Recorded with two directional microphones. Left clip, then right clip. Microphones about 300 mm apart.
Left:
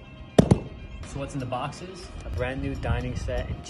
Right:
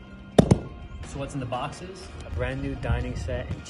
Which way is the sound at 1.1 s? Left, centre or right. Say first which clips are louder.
Even; centre.